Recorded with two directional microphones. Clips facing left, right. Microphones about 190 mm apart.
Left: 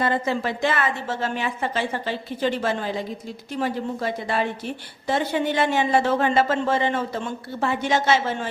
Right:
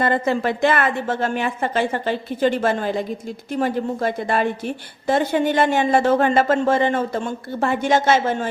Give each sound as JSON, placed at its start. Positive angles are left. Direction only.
{"t": 0.0, "sound": "a woman's voice", "side_deg": -55}